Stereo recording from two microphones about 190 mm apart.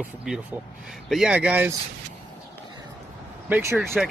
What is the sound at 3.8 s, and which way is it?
Speech, centre (ahead or behind).